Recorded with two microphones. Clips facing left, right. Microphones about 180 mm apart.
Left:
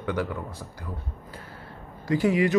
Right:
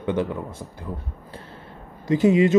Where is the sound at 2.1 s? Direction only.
20° right (ahead or behind).